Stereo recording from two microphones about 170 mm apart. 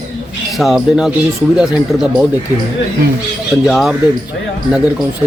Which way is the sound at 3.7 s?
Centre (ahead or behind).